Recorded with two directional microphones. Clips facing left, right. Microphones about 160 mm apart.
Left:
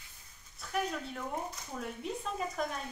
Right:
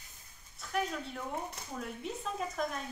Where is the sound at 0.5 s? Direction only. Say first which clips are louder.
Even; centre (ahead or behind).